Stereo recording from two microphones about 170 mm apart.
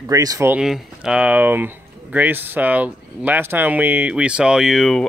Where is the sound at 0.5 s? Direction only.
5° right (ahead or behind).